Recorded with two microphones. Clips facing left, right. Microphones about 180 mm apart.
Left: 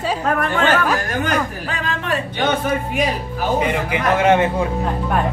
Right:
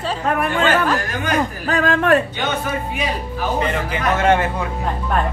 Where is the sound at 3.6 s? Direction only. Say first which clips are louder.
Left 2 dB; 10° left (ahead or behind).